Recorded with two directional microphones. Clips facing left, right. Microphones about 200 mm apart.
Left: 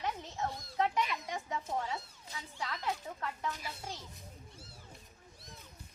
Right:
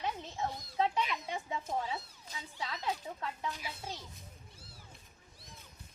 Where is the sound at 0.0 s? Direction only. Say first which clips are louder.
Even; 20° right (ahead or behind).